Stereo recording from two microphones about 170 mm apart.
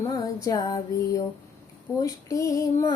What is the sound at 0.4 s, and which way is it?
Music, 20° left (ahead or behind).